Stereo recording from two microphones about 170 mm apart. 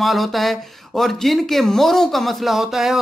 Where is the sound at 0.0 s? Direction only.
Centre (ahead or behind).